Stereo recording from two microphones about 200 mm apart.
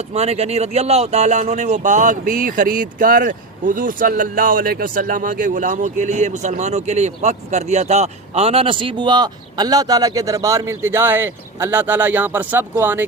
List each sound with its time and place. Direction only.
0.1 s speech: 30° right (ahead or behind); by 13.1 s 10° right (ahead or behind)